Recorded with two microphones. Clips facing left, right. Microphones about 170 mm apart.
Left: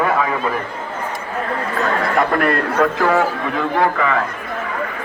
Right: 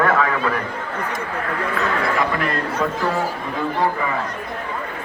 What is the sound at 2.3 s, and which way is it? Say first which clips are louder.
Speech: left 5 dB; 60° left (ahead or behind).